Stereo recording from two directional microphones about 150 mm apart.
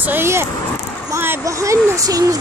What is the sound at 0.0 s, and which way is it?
Speech, 15° right (ahead or behind).